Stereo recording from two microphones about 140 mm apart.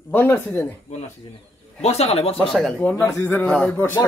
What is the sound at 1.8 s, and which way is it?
Speech, 50° left (ahead or behind).